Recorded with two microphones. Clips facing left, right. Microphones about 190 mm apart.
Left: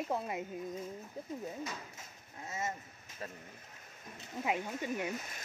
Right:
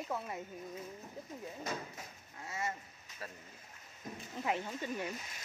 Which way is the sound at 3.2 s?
25° left (ahead or behind).